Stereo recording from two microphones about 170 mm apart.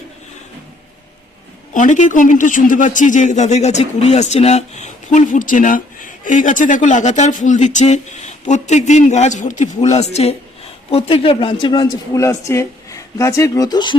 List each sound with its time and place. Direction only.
1.7 s a man's voice: 45° left (ahead or behind); by 13.9 s 25° left (ahead or behind)